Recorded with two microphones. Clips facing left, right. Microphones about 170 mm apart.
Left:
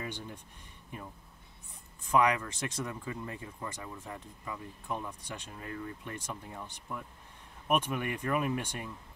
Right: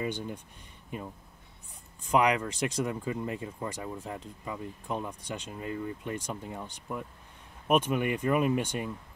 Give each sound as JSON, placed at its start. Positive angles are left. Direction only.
{"t": 2.0, "sound": "speech", "side_deg": -20}